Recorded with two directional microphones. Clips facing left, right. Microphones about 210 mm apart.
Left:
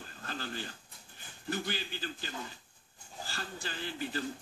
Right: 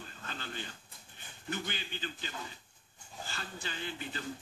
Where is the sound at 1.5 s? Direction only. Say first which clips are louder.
Left 3 dB; 40° left (ahead or behind).